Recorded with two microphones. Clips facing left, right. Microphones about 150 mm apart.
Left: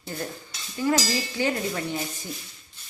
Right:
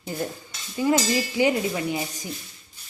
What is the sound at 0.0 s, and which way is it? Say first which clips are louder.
A woman's voice: right 3 dB; 15° right (ahead or behind).